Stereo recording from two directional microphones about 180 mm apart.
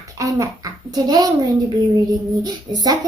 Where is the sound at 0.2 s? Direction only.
20° right (ahead or behind).